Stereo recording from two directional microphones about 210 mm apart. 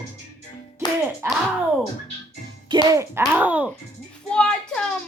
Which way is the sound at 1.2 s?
10° right (ahead or behind).